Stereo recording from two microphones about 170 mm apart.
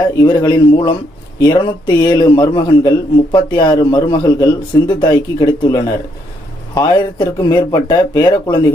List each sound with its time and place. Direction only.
0.2 s a man's voice: 25° left (ahead or behind)